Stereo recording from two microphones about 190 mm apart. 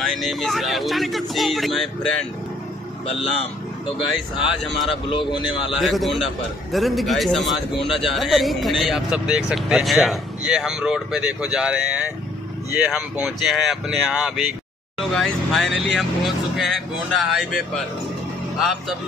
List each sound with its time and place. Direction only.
0.0 s a man's voice: centre (ahead or behind)
3.1 s speech: 30° left (ahead or behind)
5.1 s a man's voice: 25° left (ahead or behind)
5.8 s a man's voice: centre (ahead or behind)